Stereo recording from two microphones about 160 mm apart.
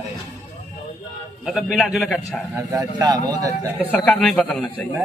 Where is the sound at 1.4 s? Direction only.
Centre (ahead or behind).